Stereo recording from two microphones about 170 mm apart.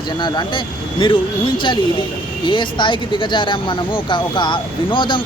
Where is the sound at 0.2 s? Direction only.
25° left (ahead or behind).